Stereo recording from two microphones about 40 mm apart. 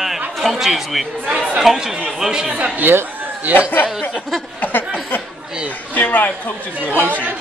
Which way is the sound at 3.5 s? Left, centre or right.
Right.